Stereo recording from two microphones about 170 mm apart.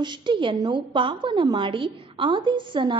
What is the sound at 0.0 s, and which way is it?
A woman's voice, 25° right (ahead or behind).